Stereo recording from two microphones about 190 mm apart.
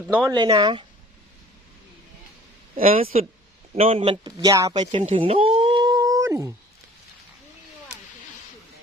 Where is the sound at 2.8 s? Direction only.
30° right (ahead or behind); by 6.5 s 15° right (ahead or behind).